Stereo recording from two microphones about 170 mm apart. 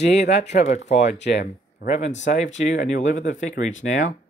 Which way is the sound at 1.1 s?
90° left.